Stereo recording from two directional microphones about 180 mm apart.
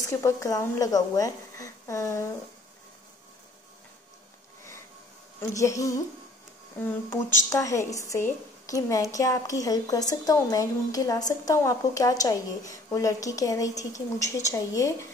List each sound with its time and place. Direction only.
0.0 s speech: 15° left (ahead or behind)
5.4 s a woman's voice: 15° left (ahead or behind)